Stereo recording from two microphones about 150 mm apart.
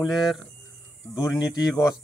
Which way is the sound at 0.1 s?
Centre (ahead or behind).